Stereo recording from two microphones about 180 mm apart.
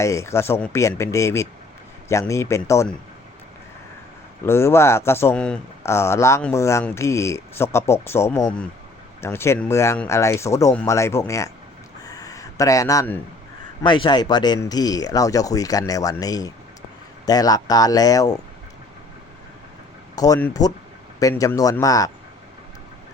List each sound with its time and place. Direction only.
0.0 s speech: 15° left (ahead or behind)
4.4 s speech: 15° left (ahead or behind)
12.0 s a sound: 20° left (ahead or behind)
13.8 s speech: 25° left (ahead or behind)
20.1 s speech: 20° left (ahead or behind)